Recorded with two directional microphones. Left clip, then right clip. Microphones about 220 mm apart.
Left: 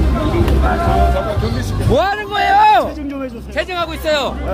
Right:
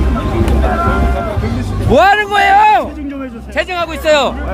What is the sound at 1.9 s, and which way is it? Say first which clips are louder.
Vehicle: right 7 dB; 25° right (ahead or behind).